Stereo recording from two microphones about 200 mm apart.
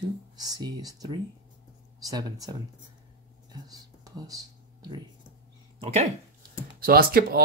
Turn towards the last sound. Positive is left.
turn(degrees=-50)  # may be behind; listen again after turning